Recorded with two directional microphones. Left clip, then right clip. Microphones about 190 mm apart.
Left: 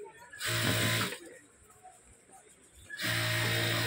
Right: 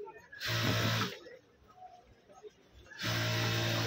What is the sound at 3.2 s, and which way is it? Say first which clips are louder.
Music: left 2 dB; 15° left (ahead or behind).